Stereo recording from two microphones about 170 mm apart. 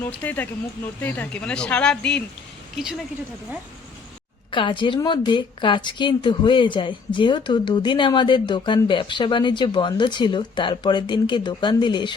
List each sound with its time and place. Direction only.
0.0 s speech: 10° left (ahead or behind)
4.5 s a woman's voice: 30° left (ahead or behind)